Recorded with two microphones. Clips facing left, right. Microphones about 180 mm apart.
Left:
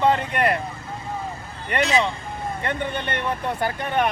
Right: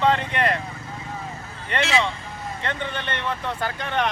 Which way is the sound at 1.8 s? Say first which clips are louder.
Left 2 dB; 40° left (ahead or behind).